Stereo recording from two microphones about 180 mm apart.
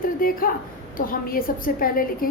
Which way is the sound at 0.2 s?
55° left (ahead or behind).